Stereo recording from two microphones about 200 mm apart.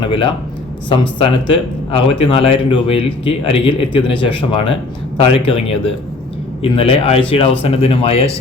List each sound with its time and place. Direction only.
0.0 s speech: 25° left (ahead or behind)